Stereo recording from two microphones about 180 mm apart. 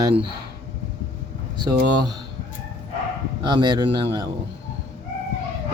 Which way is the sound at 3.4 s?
25° right (ahead or behind).